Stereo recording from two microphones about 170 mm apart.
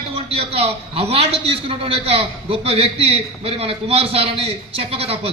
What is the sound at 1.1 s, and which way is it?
A man's voice, 35° right (ahead or behind).